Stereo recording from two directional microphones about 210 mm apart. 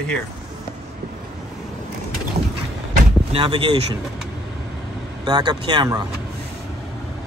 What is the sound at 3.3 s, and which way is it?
Speech, 25° right (ahead or behind).